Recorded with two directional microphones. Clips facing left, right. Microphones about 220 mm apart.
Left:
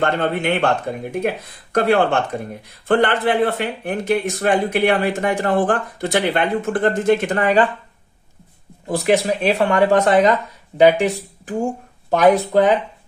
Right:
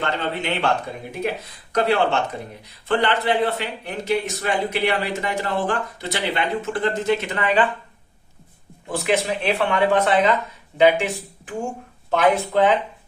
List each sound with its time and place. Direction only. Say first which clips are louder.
0.0 s a man's voice: left 6 dB; 50° left (ahead or behind)
1.7 s a man's voice: left 3 dB; 50° left (ahead or behind)
8.9 s speech: left 5 dB; 40° left (ahead or behind)